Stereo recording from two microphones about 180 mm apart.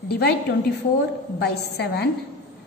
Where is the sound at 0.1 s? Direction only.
65° left (ahead or behind).